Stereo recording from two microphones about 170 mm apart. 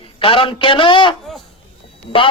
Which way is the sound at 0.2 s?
30° left (ahead or behind).